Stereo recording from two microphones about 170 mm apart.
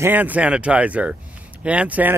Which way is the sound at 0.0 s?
10° right (ahead or behind).